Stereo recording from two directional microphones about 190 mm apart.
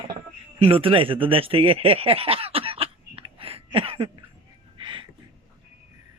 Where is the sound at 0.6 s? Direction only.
30° right (ahead or behind).